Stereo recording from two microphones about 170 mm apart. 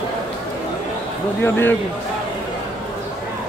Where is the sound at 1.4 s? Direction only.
15° left (ahead or behind).